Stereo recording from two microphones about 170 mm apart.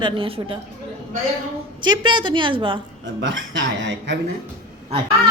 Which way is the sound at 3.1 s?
90° right.